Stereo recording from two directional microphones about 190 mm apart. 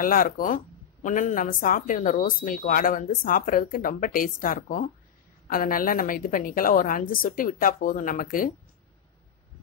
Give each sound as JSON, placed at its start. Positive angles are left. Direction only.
{"t": 0.0, "sound": "speech", "side_deg": 45}